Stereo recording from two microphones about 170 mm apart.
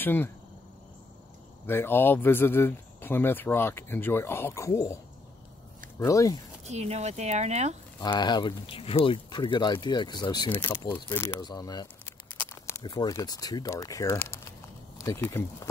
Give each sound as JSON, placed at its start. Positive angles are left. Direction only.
{"t": 0.0, "sound": "speech", "side_deg": 10}
{"t": 1.7, "sound": "speech", "side_deg": 15}
{"t": 5.9, "sound": "speech", "side_deg": 20}
{"t": 6.6, "sound": "speech", "side_deg": -40}
{"t": 8.0, "sound": "speech", "side_deg": 25}
{"t": 11.1, "sound": "speech", "side_deg": 15}
{"t": 12.3, "sound": "speech", "side_deg": 15}